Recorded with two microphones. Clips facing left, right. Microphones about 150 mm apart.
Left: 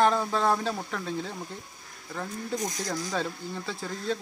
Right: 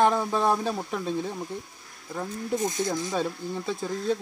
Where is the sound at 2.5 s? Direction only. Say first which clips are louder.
Right 5 dB; 25° right (ahead or behind).